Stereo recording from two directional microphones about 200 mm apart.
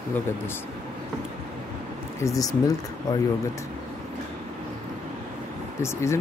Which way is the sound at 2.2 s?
15° left (ahead or behind).